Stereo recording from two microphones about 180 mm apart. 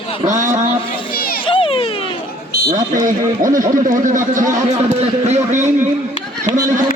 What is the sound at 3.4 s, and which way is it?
A man's voice, 45° right (ahead or behind).